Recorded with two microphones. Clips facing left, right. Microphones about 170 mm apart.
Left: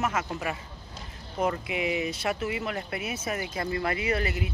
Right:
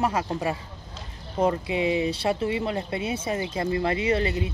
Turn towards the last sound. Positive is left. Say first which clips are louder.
# right 4 dB
turn(degrees=-30)  # may be behind; listen again after turning